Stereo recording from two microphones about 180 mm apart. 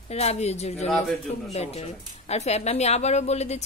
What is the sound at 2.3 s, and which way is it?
A woman's voice, 35° left (ahead or behind).